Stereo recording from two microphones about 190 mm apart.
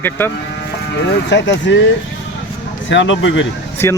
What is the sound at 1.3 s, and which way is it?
Speech, 70° left (ahead or behind).